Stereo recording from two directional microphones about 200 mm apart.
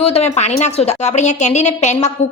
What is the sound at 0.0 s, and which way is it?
A woman's voice, 30° left (ahead or behind).